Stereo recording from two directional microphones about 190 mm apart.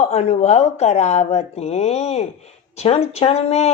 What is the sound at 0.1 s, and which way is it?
Speech, 35° left (ahead or behind).